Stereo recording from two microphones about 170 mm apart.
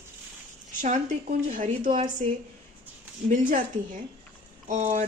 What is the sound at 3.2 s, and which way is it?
Speech, 50° right (ahead or behind).